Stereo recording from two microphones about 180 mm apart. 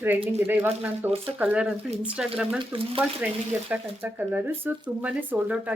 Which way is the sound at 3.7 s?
10° right (ahead or behind).